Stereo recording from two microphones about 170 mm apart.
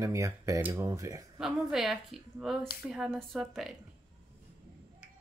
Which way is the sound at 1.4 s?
Centre (ahead or behind).